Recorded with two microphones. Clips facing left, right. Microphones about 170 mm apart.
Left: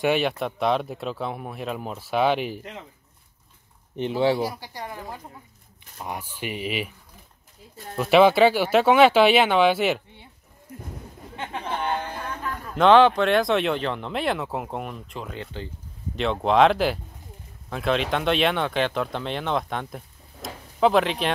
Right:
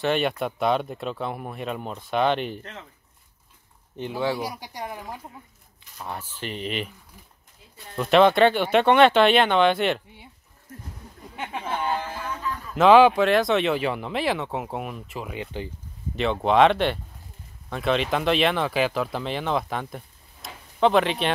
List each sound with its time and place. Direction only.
0.0 s speech: 5° left (ahead or behind)
3.9 s speech: 20° left (ahead or behind)
4.4 s speech: 15° right (ahead or behind)
5.9 s speech: 15° left (ahead or behind)
8.0 s speech: 5° left (ahead or behind)
11.3 s a sound: 5° right (ahead or behind)
12.7 s speech: 5° right (ahead or behind)
16.2 s speech: centre (ahead or behind)
20.4 s a sound: centre (ahead or behind)